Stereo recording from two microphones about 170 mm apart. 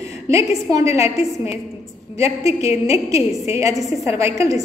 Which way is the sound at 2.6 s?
40° left (ahead or behind).